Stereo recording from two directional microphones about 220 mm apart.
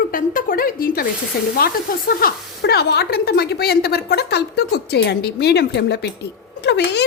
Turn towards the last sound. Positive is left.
turn(degrees=50)  # may be behind; listen again after turning